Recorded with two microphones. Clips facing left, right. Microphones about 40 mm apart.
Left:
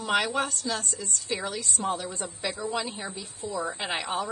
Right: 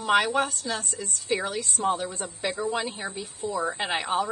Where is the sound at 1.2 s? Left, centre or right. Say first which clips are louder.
Right 5 dB; right.